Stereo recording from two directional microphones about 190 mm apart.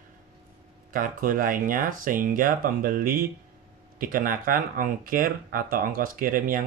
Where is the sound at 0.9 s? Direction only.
45° right (ahead or behind).